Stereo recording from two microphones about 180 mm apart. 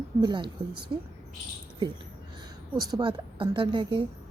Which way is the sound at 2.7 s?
20° right (ahead or behind).